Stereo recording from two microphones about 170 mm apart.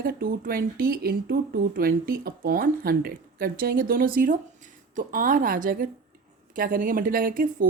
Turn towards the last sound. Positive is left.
turn(degrees=-55)  # may be behind; listen again after turning